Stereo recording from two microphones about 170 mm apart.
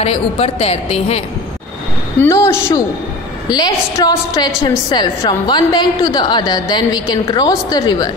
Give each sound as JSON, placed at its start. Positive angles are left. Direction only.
{"t": 0.0, "sound": "a woman's voice", "side_deg": 35}
{"t": 2.1, "sound": "a woman's voice", "side_deg": 15}